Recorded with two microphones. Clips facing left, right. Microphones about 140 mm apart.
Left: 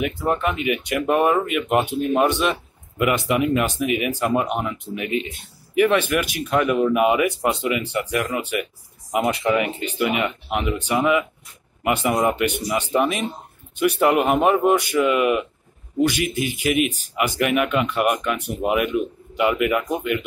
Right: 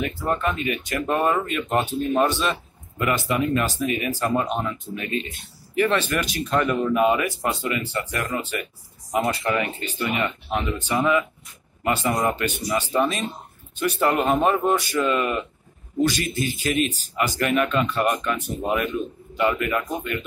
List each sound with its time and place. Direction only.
0.0 s a man's voice: 10° left (ahead or behind)